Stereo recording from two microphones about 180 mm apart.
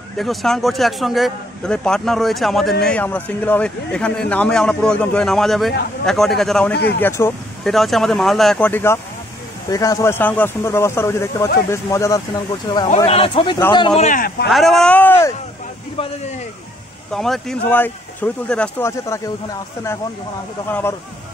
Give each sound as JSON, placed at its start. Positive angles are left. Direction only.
{"t": 0.2, "sound": "a man's voice", "side_deg": 0}
{"t": 7.6, "sound": "a man's voice", "side_deg": 0}
{"t": 14.0, "sound": "speech", "side_deg": 45}
{"t": 14.5, "sound": "speech", "side_deg": 0}
{"t": 16.0, "sound": "speech", "side_deg": 30}
{"t": 17.1, "sound": "speech", "side_deg": 0}